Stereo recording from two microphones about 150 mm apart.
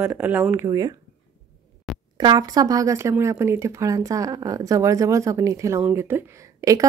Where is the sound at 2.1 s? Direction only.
30° right (ahead or behind).